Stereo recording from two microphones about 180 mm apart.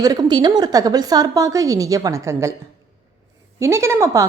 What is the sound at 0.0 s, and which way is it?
A woman's voice, 20° right (ahead or behind).